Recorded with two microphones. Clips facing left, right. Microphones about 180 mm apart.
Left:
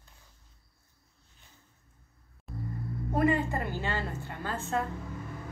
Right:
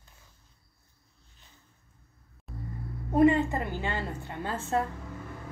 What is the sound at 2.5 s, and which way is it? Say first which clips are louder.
Music: left 2 dB; centre (ahead or behind).